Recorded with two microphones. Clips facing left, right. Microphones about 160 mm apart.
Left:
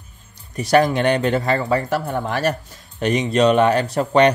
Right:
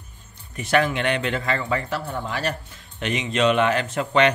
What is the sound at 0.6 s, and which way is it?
Speech, 40° left (ahead or behind).